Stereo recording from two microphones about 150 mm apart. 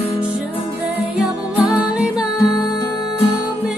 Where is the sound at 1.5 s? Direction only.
5° right (ahead or behind).